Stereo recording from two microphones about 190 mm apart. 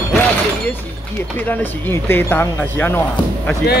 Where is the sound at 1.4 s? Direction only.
10° left (ahead or behind).